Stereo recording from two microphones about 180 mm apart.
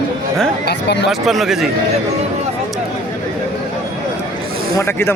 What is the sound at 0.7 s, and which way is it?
Speech, 70° left (ahead or behind).